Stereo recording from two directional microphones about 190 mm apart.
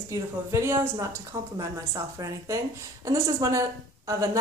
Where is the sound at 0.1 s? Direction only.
15° right (ahead or behind).